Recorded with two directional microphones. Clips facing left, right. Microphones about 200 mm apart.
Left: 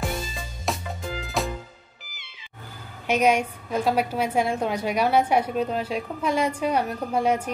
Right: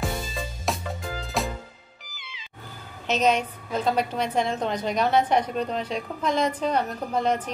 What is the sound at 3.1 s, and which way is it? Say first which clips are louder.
A woman's voice: left 2 dB; 10° left (ahead or behind).